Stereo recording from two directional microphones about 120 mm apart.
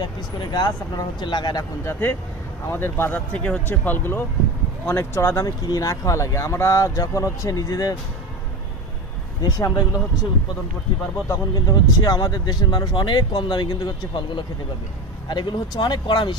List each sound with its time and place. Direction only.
0.0 s speech: 35° left (ahead or behind)
1.9 s speech: 20° left (ahead or behind)
9.4 s speech: 35° left (ahead or behind)
11.2 s speech: 30° left (ahead or behind)